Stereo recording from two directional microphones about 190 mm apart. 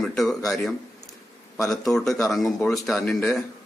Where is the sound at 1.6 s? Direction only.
Centre (ahead or behind).